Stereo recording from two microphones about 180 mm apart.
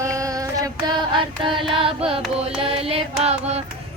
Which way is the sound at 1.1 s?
25° right (ahead or behind).